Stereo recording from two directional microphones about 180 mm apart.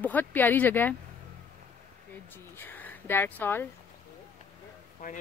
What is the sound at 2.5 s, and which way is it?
Speech, 10° left (ahead or behind).